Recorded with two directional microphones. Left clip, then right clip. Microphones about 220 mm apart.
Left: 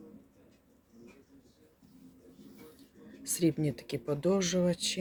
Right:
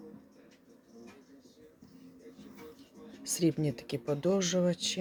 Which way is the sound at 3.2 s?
Centre (ahead or behind).